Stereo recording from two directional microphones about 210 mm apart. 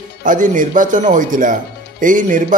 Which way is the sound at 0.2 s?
40° right (ahead or behind).